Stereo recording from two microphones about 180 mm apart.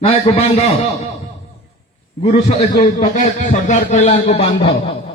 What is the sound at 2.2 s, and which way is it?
A man's voice, 35° left (ahead or behind).